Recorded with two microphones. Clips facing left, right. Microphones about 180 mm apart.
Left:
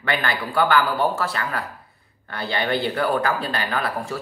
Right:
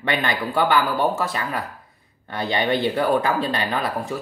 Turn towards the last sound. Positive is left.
turn(degrees=-20)  # may be behind; listen again after turning